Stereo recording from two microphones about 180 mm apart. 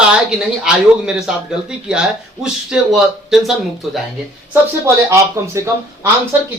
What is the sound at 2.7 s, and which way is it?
Speech, centre (ahead or behind).